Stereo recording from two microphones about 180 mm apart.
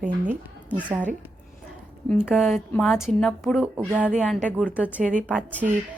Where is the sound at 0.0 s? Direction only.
45° right (ahead or behind).